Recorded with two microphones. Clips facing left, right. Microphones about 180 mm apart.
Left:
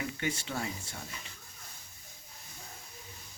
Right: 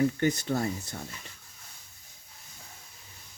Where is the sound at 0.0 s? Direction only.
45° right (ahead or behind).